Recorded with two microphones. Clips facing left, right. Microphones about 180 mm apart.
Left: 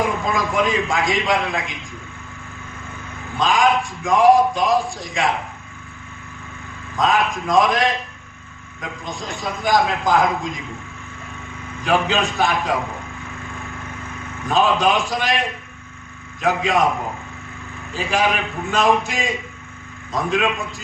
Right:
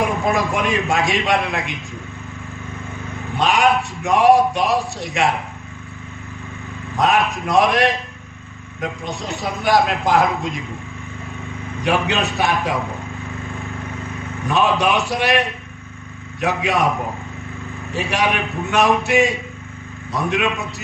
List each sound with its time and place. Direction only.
0.0 s a man's voice: 70° right (ahead or behind)
3.3 s a man's voice: 70° right (ahead or behind)
7.0 s a man's voice: 70° right (ahead or behind)
11.9 s a man's voice: 70° right (ahead or behind)
14.5 s a man's voice: 70° right (ahead or behind)
16.4 s a man's voice: 70° right (ahead or behind)
17.9 s a man's voice: 70° right (ahead or behind)